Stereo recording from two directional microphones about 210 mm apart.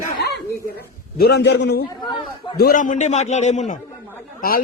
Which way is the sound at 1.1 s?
50° left (ahead or behind).